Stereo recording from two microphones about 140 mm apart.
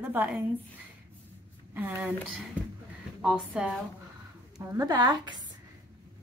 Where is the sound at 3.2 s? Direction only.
5° right (ahead or behind).